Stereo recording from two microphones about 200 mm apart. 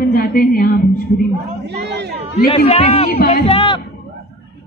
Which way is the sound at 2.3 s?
30° left (ahead or behind).